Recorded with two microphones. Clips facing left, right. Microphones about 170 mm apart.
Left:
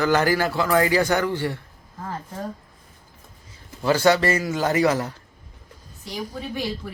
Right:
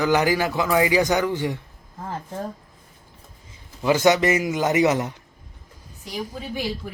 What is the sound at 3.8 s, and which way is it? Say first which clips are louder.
A man's voice: right 1 dB; 15° right (ahead or behind).